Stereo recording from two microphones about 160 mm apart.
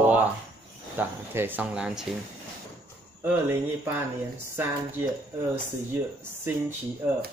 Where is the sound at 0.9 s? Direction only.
10° right (ahead or behind).